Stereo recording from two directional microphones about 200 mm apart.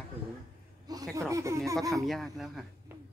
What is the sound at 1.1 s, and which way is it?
Speech, 15° right (ahead or behind).